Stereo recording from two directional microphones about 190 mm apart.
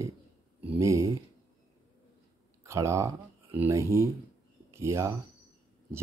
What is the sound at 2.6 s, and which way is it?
Speech, 15° right (ahead or behind).